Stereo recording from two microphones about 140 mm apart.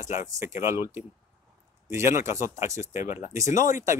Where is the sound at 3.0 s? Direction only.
65° left (ahead or behind).